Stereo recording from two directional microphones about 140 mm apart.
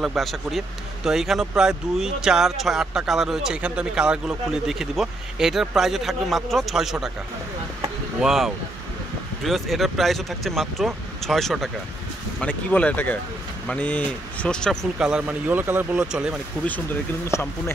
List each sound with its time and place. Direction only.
0.0 s speech: centre (ahead or behind)
8.2 s speech: centre (ahead or behind)
17.3 s speech: 15° left (ahead or behind)